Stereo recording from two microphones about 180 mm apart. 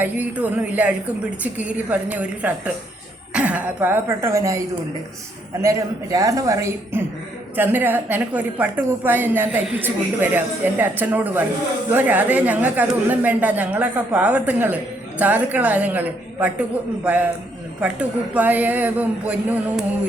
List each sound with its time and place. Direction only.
0.0 s a woman's voice: 10° right (ahead or behind)
5.6 s a man's voice: 20° right (ahead or behind)